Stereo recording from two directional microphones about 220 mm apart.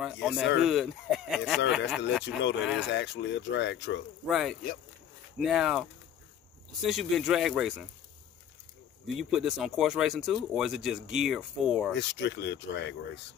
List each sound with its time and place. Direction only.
0.0 s speech: centre (ahead or behind)
2.9 s speech: 50° left (ahead or behind)
4.3 s speech: centre (ahead or behind)
9.0 s speech: centre (ahead or behind)
12.0 s speech: 55° left (ahead or behind)